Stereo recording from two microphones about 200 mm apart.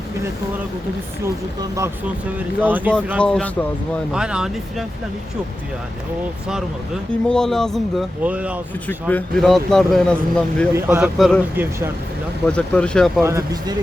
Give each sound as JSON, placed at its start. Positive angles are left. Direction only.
{"t": 2.6, "sound": "speech", "side_deg": -10}
{"t": 3.2, "sound": "speech", "side_deg": 5}
{"t": 7.3, "sound": "speech", "side_deg": 5}
{"t": 8.9, "sound": "speech", "side_deg": 10}
{"t": 10.8, "sound": "speech", "side_deg": -10}
{"t": 12.5, "sound": "speech", "side_deg": 5}
{"t": 13.2, "sound": "speech", "side_deg": -15}